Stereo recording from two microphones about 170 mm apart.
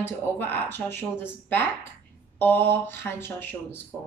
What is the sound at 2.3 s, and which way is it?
Speech, 10° left (ahead or behind).